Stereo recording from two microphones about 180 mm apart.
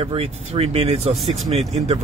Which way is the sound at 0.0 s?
35° right (ahead or behind).